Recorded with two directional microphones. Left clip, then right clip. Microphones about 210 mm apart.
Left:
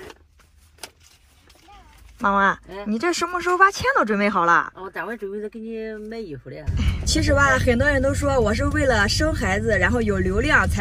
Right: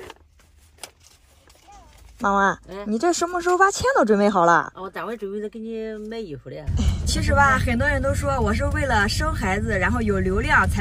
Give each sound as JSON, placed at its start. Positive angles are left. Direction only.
{"t": 2.7, "sound": "speech", "side_deg": 0}
{"t": 3.0, "sound": "speech", "side_deg": -15}
{"t": 4.7, "sound": "speech", "side_deg": 0}